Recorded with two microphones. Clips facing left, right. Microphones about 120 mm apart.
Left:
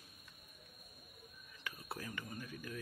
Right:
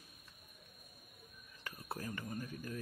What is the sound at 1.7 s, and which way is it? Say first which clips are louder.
Speech: right 2 dB; 40° right (ahead or behind).